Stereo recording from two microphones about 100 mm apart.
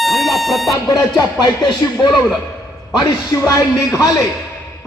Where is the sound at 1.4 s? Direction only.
40° left (ahead or behind).